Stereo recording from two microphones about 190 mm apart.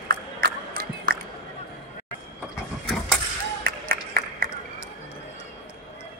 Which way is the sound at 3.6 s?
55° right (ahead or behind).